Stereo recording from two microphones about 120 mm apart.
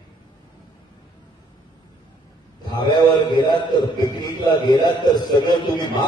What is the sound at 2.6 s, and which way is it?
A man's voice, 35° left (ahead or behind).